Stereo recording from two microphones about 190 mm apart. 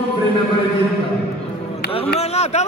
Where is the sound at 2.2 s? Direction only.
35° left (ahead or behind).